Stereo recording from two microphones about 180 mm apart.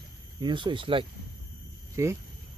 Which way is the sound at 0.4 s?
25° right (ahead or behind).